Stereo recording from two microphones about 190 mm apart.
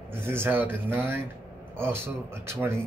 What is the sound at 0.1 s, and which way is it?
Speech, 10° right (ahead or behind).